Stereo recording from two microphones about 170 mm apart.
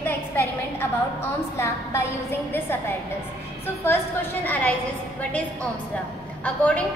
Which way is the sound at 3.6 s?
15° left (ahead or behind).